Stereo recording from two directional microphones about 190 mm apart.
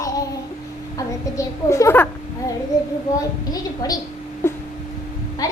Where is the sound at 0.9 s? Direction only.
15° left (ahead or behind).